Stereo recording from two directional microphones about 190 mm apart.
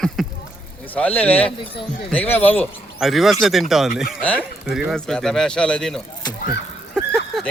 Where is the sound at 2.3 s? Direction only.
10° left (ahead or behind).